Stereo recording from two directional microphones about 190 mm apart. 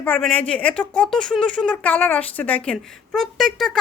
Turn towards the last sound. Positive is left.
turn(degrees=0)  # may be behind; listen again after turning